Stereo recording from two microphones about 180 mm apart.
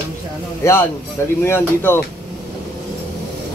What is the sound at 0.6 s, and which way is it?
Speech, 15° left (ahead or behind).